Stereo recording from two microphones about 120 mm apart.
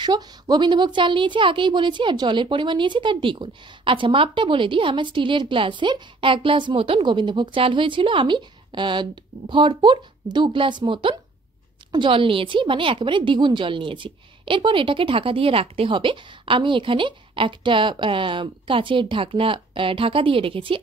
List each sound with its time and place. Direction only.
0.0 s a woman's voice: 35° right (ahead or behind)